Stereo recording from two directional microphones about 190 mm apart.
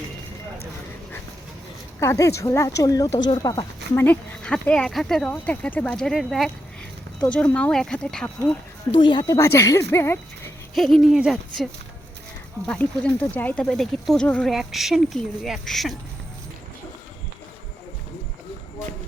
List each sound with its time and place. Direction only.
2.0 s a woman's voice: 15° left (ahead or behind)
8.9 s speech: 25° left (ahead or behind)
10.8 s speech: centre (ahead or behind)